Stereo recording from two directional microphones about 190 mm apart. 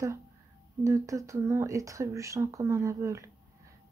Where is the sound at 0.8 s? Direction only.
15° right (ahead or behind).